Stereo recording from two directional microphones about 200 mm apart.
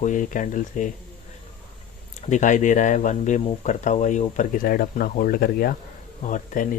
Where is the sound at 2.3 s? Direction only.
40° left (ahead or behind).